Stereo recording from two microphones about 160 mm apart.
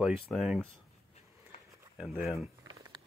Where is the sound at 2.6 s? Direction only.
25° right (ahead or behind).